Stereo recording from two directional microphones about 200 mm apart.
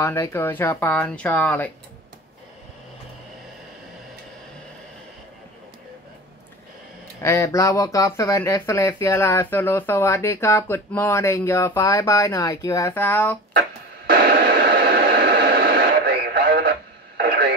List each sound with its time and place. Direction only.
0.0 s speech: 15° left (ahead or behind)
7.2 s speech: 15° left (ahead or behind)
14.0 s radio: 50° right (ahead or behind)